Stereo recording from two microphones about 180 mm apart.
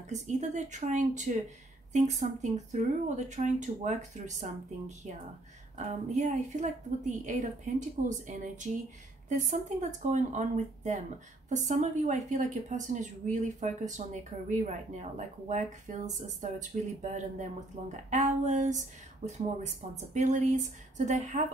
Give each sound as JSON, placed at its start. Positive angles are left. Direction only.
{"t": 0.1, "sound": "a woman's voice", "side_deg": -40}